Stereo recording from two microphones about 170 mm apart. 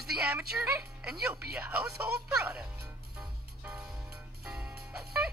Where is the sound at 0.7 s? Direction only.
10° right (ahead or behind).